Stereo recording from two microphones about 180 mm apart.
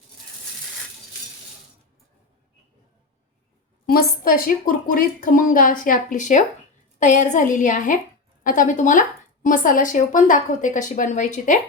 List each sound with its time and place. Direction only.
3.8 s speech: 55° left (ahead or behind)